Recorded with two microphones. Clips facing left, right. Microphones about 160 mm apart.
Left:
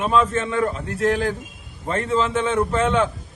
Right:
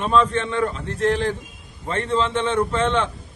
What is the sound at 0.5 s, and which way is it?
Speech, 40° left (ahead or behind).